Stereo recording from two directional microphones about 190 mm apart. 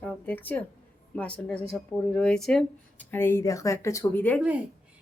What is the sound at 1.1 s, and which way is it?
Speech, 5° left (ahead or behind).